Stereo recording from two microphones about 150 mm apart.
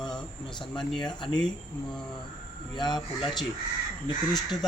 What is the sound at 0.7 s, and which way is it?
Speech, 5° left (ahead or behind).